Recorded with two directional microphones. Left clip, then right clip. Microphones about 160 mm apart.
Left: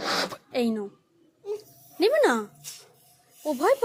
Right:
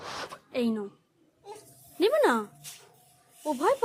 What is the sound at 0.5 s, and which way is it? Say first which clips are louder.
Speech: left 2 dB; 15° left (ahead or behind).